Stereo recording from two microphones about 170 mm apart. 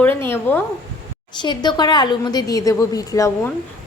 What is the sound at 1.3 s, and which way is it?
A woman's voice, 25° left (ahead or behind).